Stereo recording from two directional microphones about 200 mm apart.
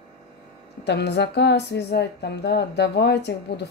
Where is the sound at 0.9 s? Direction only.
60° left (ahead or behind).